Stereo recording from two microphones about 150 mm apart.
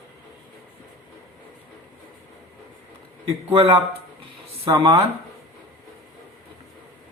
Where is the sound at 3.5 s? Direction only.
35° right (ahead or behind).